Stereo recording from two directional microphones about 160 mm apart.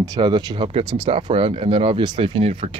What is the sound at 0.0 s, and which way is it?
Speech, 25° right (ahead or behind).